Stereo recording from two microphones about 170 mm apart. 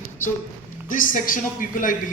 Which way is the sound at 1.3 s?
55° left (ahead or behind).